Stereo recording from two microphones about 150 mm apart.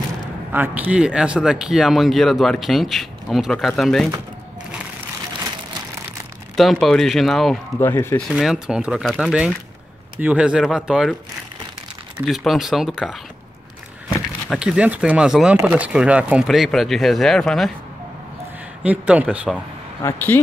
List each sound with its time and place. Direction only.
0.5 s a man's voice: 10° right (ahead or behind)
6.5 s a man's voice: centre (ahead or behind)
7.8 s speech: 15° left (ahead or behind)
8.3 s a man's voice: centre (ahead or behind)
12.3 s a man's voice: centre (ahead or behind)
14.5 s a man's voice: 5° right (ahead or behind)
18.8 s a man's voice: 10° right (ahead or behind)
20.0 s speech: 15° left (ahead or behind)